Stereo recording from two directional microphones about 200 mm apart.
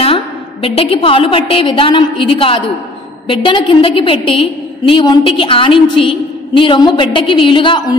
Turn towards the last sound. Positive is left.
turn(degrees=25)  # may be behind; listen again after turning